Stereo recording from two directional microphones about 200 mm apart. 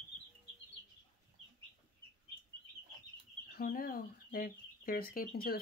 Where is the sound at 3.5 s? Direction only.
50° left (ahead or behind).